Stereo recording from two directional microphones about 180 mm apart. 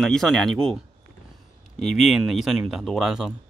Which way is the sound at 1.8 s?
Centre (ahead or behind).